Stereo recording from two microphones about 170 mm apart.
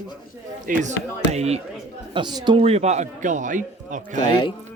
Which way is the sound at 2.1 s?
25° right (ahead or behind).